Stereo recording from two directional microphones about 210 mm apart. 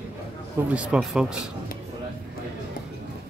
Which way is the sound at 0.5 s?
5° right (ahead or behind).